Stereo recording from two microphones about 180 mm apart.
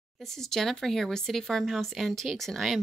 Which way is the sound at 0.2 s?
Centre (ahead or behind).